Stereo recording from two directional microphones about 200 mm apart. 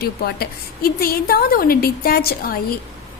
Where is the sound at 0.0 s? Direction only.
50° left (ahead or behind).